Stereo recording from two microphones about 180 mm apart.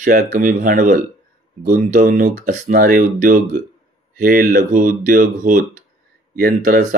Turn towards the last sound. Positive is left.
turn(degrees=-50)  # may be behind; listen again after turning